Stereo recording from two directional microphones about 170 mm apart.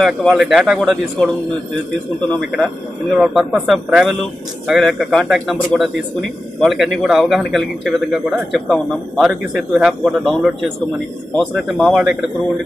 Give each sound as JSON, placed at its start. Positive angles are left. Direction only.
{"t": 0.0, "sound": "a man's voice", "side_deg": 0}
{"t": 3.2, "sound": "a man's voice", "side_deg": 0}